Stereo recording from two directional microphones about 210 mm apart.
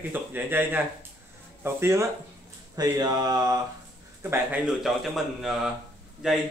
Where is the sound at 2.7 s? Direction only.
20° right (ahead or behind).